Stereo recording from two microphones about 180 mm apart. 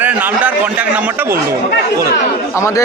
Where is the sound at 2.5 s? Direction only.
15° left (ahead or behind).